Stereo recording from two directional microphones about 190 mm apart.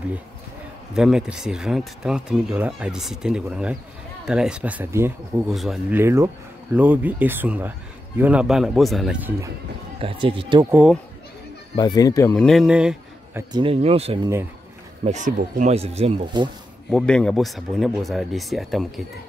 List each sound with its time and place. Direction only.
0.9 s a man's voice: 5° right (ahead or behind)
5.5 s speech: centre (ahead or behind)
5.9 s a man's voice: 15° right (ahead or behind)
9.9 s speech: 30° right (ahead or behind)
10.7 s speech: 5° right (ahead or behind)
11.7 s speech: 20° left (ahead or behind)
12.4 s a man's voice: centre (ahead or behind); by 16.4 s 35° right (ahead or behind)
16.9 s speech: 5° left (ahead or behind)